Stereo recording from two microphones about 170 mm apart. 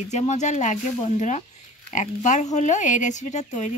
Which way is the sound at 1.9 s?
45° left (ahead or behind).